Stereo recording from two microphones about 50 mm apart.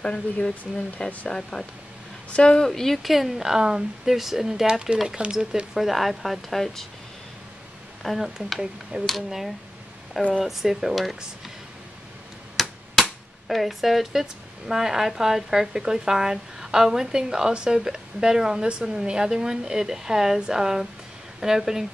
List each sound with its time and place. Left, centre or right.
0.0 s speech: centre
5.8 s a woman's voice: centre
8.0 s a woman's voice: centre
12.6 s a sound: centre
13.5 s a woman's voice: centre